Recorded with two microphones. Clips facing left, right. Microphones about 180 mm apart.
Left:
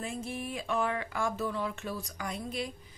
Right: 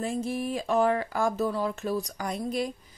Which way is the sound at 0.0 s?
40° right (ahead or behind).